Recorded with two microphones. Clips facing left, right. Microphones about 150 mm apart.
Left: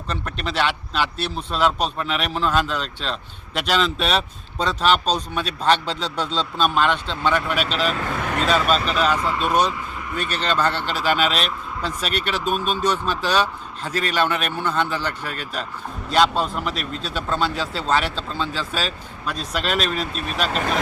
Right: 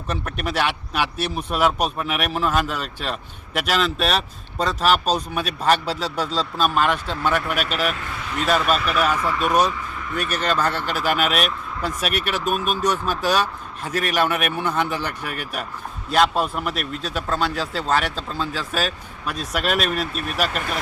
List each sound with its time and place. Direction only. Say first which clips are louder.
0.1 s speech: right 2 dB; 10° right (ahead or behind)
8.1 s vehicle: left 4 dB; 60° left (ahead or behind)
8.4 s a man's voice: right 1 dB; 5° right (ahead or behind)
8.7 s speech: left 1 dB; 30° left (ahead or behind)
9.5 s a man's voice: right 1 dB; 10° right (ahead or behind)